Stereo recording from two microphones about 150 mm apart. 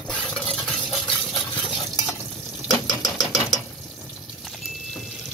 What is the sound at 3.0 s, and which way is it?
Engine, 25° left (ahead or behind).